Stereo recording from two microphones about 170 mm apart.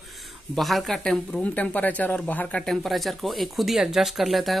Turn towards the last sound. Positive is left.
turn(degrees=0)  # may be behind; listen again after turning